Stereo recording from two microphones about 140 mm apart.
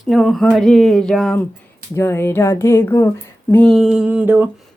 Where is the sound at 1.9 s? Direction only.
20° left (ahead or behind).